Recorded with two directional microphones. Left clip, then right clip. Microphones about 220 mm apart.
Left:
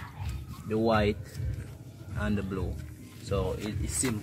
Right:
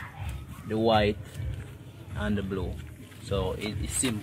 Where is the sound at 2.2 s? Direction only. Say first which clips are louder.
Right 2 dB; 15° right (ahead or behind).